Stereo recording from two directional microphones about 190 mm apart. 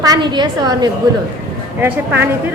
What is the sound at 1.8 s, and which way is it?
Speech, 10° right (ahead or behind).